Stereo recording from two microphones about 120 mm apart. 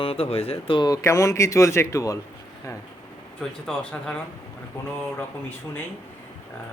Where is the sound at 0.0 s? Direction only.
50° left (ahead or behind).